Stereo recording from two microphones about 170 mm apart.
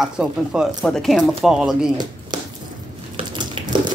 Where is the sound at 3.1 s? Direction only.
30° right (ahead or behind).